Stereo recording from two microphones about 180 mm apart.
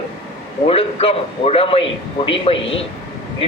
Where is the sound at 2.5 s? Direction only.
90° left.